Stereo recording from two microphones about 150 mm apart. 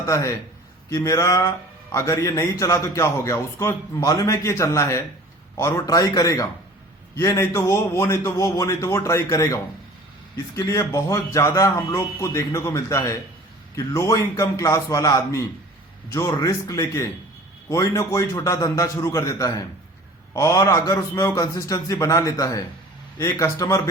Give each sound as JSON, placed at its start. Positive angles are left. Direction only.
{"t": 0.0, "sound": "speech", "side_deg": 20}